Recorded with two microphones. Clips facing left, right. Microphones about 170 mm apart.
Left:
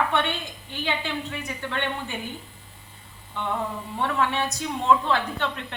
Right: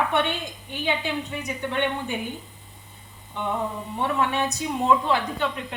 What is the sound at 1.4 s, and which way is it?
Speech, 15° right (ahead or behind).